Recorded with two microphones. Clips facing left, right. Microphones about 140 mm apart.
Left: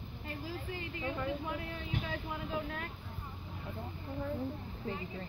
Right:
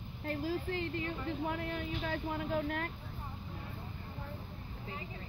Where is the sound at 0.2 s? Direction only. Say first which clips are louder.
Right 7 dB; 65° right (ahead or behind).